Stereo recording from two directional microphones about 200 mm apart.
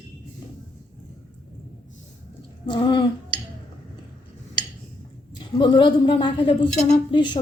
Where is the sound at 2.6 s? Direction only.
25° left (ahead or behind).